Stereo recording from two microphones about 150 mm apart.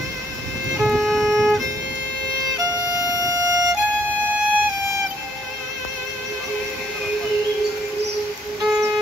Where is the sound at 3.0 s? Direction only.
20° right (ahead or behind).